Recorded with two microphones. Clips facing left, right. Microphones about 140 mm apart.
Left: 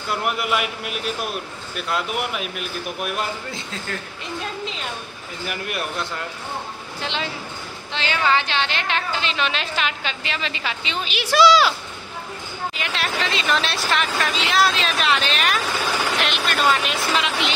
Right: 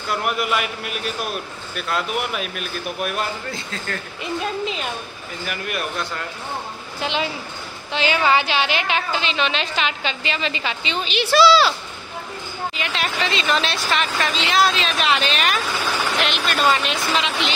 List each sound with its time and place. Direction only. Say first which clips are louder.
0.2 s speech: even; 20° left (ahead or behind)
1.8 s speech: right 1 dB; 15° left (ahead or behind)
5.5 s speech: right 1 dB; 20° left (ahead or behind)
7.0 s a woman's voice: right 4 dB; 10° right (ahead or behind); by 11.7 s 15° left (ahead or behind)
12.7 s a woman's voice: right 1 dB; centre (ahead or behind)